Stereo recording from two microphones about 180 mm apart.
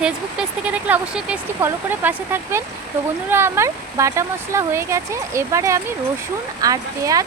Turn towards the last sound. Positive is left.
turn(degrees=-20)  # may be behind; listen again after turning